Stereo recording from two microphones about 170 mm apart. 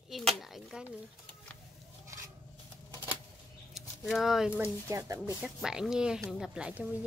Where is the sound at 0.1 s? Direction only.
Centre (ahead or behind).